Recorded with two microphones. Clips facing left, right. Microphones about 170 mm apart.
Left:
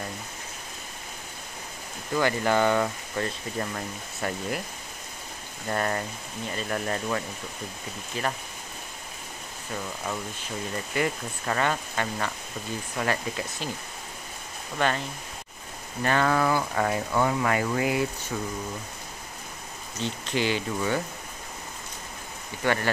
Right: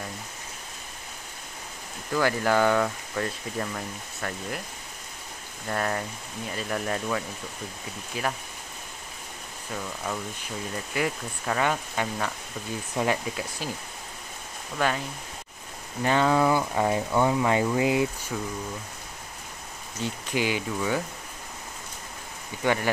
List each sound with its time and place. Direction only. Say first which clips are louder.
2.1 s speech: even; centre (ahead or behind)
5.7 s speech: left 1 dB; centre (ahead or behind)
11.0 s speech: left 1 dB; 5° right (ahead or behind)
14.8 s speech: even; 5° right (ahead or behind)
18.3 s speech: even; centre (ahead or behind)
20.0 s speech: even; 10° right (ahead or behind)
22.6 s speech: right 1 dB; 10° right (ahead or behind)